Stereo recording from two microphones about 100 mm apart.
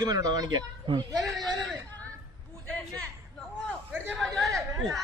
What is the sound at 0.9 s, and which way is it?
Speech, 70° right (ahead or behind).